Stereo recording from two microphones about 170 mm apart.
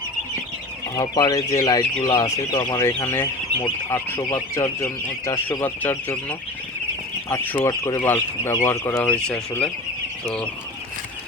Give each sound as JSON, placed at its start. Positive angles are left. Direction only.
{"t": 0.9, "sound": "speech", "side_deg": 20}